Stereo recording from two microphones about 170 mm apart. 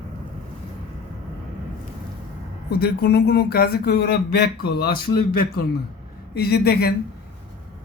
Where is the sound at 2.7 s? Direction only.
70° left (ahead or behind).